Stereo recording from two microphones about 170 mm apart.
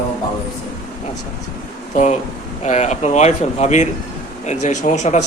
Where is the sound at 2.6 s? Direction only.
40° left (ahead or behind).